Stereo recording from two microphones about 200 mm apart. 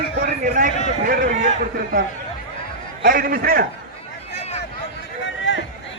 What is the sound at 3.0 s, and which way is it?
Speech, 45° right (ahead or behind).